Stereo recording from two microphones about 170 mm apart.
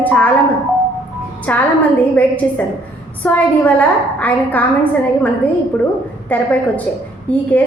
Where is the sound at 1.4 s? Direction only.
10° left (ahead or behind).